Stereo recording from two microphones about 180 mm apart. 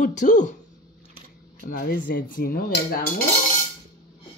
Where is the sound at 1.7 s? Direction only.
55° left (ahead or behind).